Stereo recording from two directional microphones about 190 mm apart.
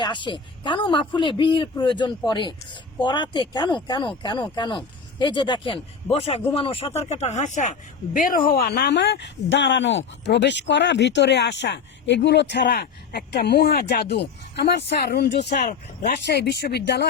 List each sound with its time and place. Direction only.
0.0 s a man's voice: 25° left (ahead or behind); by 17.1 s 60° left (ahead or behind)